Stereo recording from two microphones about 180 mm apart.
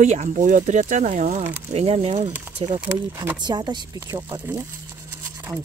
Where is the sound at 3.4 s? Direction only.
25° right (ahead or behind).